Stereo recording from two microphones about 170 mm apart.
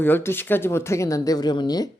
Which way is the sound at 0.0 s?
10° left (ahead or behind).